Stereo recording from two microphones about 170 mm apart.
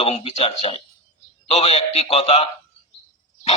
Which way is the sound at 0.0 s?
35° left (ahead or behind).